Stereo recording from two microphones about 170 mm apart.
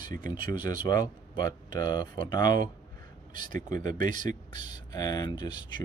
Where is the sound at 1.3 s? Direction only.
25° left (ahead or behind).